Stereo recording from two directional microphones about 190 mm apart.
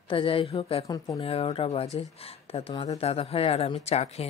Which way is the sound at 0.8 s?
20° left (ahead or behind).